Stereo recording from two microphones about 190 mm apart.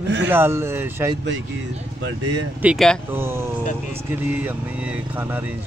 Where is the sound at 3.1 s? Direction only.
15° right (ahead or behind).